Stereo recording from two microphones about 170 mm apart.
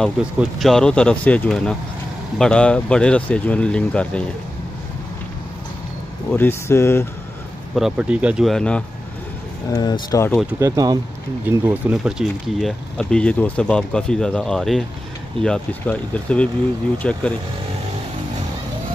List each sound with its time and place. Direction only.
0.0 s speech: 5° right (ahead or behind)
6.3 s speech: 15° left (ahead or behind)
7.7 s speech: 5° right (ahead or behind)
9.7 s speech: 25° left (ahead or behind)
10.4 s speech: 20° right (ahead or behind); by 17.2 s 5° left (ahead or behind)